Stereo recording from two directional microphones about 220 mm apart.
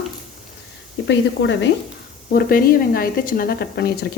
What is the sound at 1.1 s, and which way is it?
Speech, 55° left (ahead or behind).